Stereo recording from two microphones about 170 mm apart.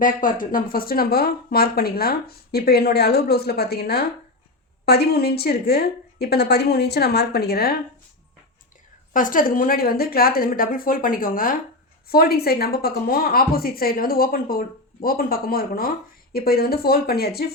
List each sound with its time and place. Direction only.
0.0 s a woman's voice: 50° left (ahead or behind)
9.1 s speech: 55° left (ahead or behind)